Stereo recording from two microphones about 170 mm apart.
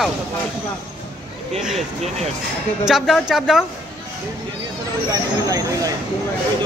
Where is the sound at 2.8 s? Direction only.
Centre (ahead or behind).